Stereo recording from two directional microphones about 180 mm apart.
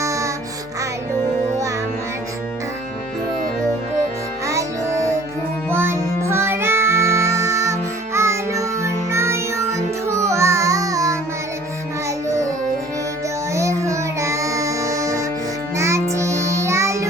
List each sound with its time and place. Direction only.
0.0 s music: 15° right (ahead or behind)
4.4 s music: 15° right (ahead or behind)
13.5 s music: 15° right (ahead or behind)
16.1 s child singing: 15° right (ahead or behind)